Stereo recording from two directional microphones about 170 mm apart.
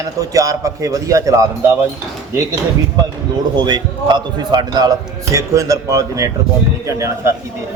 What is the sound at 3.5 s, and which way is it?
A man's voice, 25° right (ahead or behind).